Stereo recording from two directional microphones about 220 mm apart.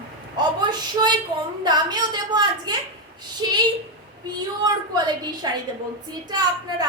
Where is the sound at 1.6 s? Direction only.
20° right (ahead or behind).